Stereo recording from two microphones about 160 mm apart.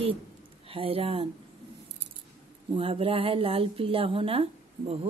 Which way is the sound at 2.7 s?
35° right (ahead or behind).